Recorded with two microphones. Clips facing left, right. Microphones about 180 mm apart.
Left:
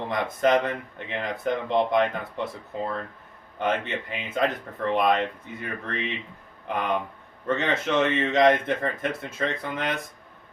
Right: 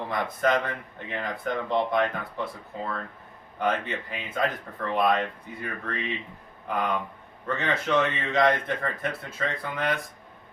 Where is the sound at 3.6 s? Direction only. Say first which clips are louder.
Left 1 dB; 20° left (ahead or behind).